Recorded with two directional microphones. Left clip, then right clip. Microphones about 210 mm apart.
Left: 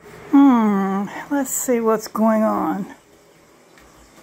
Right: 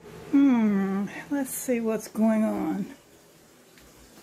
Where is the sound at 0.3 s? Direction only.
5° left (ahead or behind).